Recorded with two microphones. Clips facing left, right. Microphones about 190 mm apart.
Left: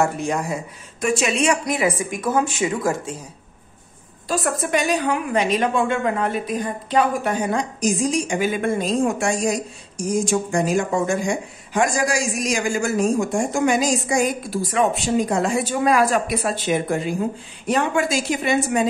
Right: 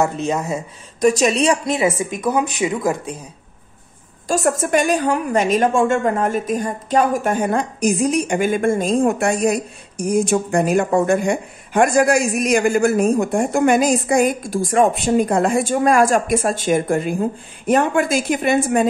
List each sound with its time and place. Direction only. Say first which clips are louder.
0.0 s a woman's voice: right 2 dB; 20° right (ahead or behind)
1.0 s a woman's voice: right 5 dB; 35° right (ahead or behind); by 3.2 s 20° right (ahead or behind)
4.3 s a woman's voice: right 4 dB; 45° right (ahead or behind)